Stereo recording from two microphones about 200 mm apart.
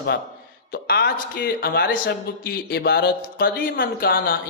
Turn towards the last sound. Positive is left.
turn(degrees=45)  # may be behind; listen again after turning